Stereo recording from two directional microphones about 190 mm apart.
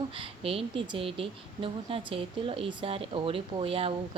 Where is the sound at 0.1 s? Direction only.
30° right (ahead or behind).